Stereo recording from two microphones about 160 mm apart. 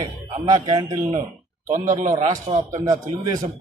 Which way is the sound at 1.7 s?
50° right (ahead or behind).